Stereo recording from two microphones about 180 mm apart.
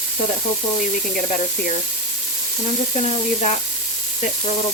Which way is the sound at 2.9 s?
35° left (ahead or behind).